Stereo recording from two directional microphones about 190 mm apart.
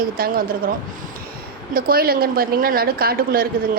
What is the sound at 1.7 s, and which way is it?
A woman's voice, 50° right (ahead or behind).